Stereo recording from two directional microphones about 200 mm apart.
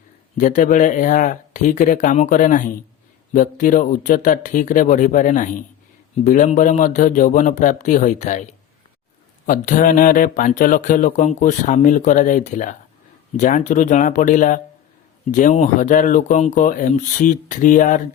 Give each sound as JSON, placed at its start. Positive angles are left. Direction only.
{"t": 0.3, "sound": "speech", "side_deg": 40}
{"t": 9.5, "sound": "speech", "side_deg": 40}